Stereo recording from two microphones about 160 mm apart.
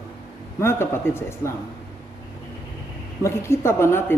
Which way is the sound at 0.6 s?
15° left (ahead or behind).